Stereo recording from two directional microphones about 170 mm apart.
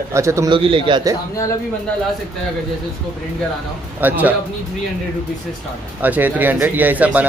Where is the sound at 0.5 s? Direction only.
30° right (ahead or behind).